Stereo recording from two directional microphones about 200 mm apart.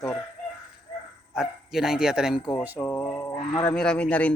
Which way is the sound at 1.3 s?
5° right (ahead or behind).